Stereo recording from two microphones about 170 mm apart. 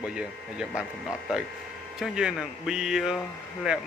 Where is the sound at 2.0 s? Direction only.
5° right (ahead or behind).